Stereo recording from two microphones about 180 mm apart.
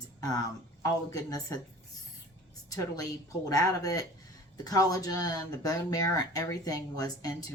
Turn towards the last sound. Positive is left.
turn(degrees=20)  # may be behind; listen again after turning